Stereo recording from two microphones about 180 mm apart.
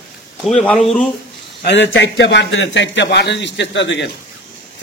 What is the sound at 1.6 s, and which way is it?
A man's voice, 85° left.